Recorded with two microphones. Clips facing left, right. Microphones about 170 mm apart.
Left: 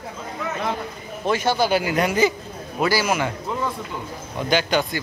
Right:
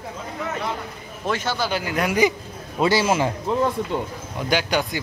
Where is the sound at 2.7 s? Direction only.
25° right (ahead or behind).